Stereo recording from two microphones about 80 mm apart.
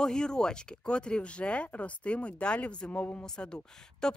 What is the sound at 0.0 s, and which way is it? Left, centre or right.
Speech, centre.